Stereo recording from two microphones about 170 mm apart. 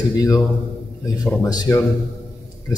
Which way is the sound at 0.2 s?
20° left (ahead or behind).